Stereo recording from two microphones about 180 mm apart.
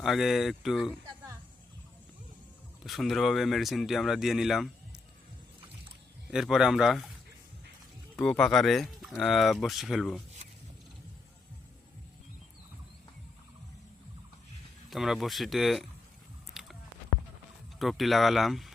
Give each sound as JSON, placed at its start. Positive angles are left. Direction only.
{"t": 0.0, "sound": "speech", "side_deg": 0}
{"t": 2.8, "sound": "speech", "side_deg": 0}
{"t": 6.3, "sound": "speech", "side_deg": 0}
{"t": 8.1, "sound": "speech", "side_deg": 5}
{"t": 14.8, "sound": "speech", "side_deg": 0}
{"t": 16.6, "sound": "a sound", "side_deg": 0}
{"t": 17.7, "sound": "speech", "side_deg": 0}